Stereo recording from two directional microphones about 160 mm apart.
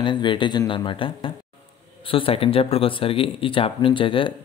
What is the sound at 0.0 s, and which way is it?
Speech, 30° left (ahead or behind).